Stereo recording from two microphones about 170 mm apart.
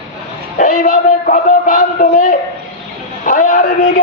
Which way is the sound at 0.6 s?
50° left (ahead or behind).